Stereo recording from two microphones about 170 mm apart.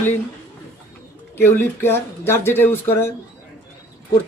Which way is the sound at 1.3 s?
10° left (ahead or behind).